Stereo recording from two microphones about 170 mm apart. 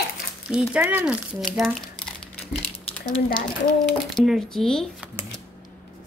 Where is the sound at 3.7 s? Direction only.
Centre (ahead or behind).